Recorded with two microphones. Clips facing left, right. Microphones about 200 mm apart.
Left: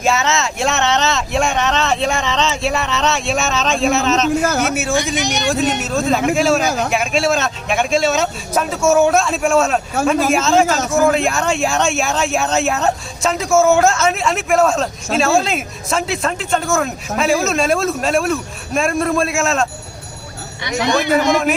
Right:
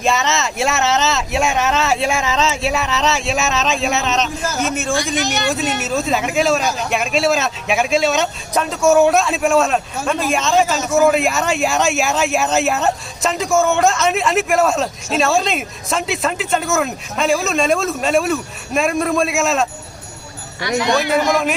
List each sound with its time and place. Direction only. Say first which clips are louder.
0.0 s a man's voice: left 1 dB; centre (ahead or behind)
4.4 s a man's voice: left 4 dB; 60° left (ahead or behind)
4.7 s a man's voice: left 1 dB; 5° left (ahead or behind)
21.2 s a man's voice: left 2 dB; centre (ahead or behind)